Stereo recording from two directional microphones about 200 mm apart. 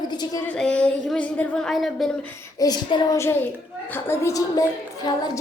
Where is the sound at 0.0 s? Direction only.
20° left (ahead or behind).